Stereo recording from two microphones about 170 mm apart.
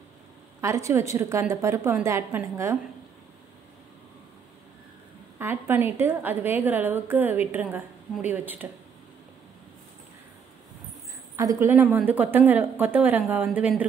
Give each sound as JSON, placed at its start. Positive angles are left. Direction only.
{"t": 0.6, "sound": "a woman's voice", "side_deg": -15}
{"t": 5.4, "sound": "a woman's voice", "side_deg": -10}
{"t": 11.3, "sound": "a woman's voice", "side_deg": -15}